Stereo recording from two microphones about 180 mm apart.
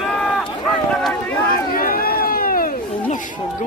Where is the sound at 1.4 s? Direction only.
55° left (ahead or behind).